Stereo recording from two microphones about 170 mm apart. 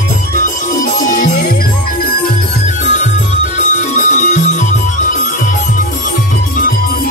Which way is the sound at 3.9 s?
45° left (ahead or behind).